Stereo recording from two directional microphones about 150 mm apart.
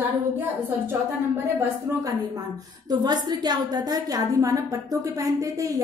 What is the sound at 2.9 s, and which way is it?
A woman's voice, 25° right (ahead or behind).